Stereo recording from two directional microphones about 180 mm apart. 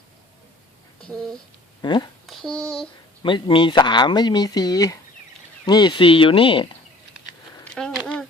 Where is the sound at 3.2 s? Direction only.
25° left (ahead or behind).